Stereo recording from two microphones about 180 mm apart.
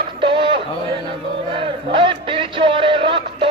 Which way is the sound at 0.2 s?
30° right (ahead or behind).